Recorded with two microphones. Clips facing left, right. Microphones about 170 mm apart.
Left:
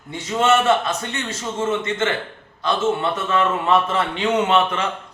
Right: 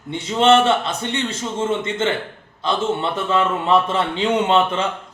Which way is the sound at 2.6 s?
25° right (ahead or behind).